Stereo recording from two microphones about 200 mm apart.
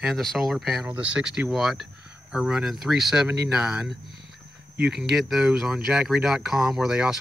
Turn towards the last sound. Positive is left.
turn(degrees=0)  # may be behind; listen again after turning